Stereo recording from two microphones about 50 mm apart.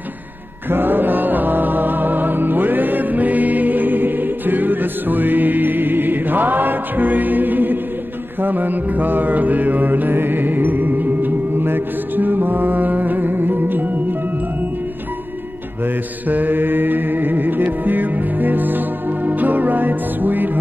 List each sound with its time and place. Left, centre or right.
0.7 s music: right
8.4 s mantra: right
15.8 s mantra: right